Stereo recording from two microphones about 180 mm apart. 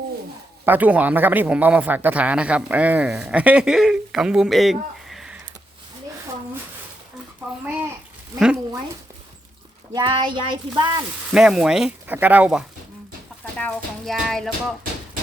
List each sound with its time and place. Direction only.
0.6 s speech: 10° right (ahead or behind)
8.4 s speech: 5° right (ahead or behind)
9.9 s speech: 25° right (ahead or behind)
11.3 s speech: 5° right (ahead or behind)
13.4 s music: 10° left (ahead or behind)